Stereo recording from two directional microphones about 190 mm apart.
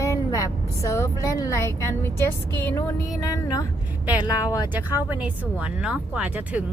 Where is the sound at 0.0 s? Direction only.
15° left (ahead or behind).